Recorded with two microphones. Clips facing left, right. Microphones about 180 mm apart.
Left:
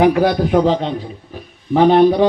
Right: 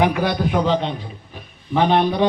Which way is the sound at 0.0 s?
40° left (ahead or behind).